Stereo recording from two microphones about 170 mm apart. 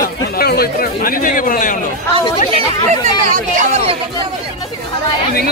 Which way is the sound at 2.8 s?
50° right (ahead or behind).